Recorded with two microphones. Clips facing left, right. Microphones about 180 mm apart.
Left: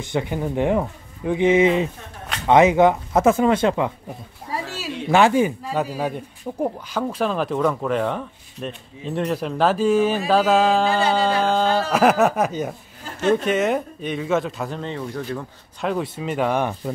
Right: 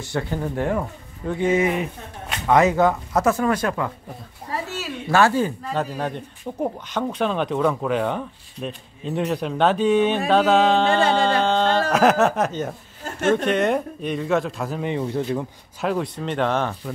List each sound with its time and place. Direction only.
0.0 s speech: 20° left (ahead or behind); by 14.8 s centre (ahead or behind)
14.8 s speech: 15° right (ahead or behind)
15.8 s speech: centre (ahead or behind)